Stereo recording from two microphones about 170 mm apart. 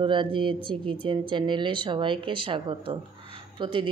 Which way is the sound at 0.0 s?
30° right (ahead or behind).